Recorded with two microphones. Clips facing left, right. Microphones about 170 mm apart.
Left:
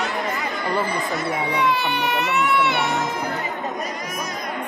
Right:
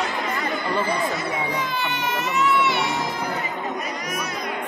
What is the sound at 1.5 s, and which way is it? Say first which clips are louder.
Speech: left 5 dB; 65° left (ahead or behind).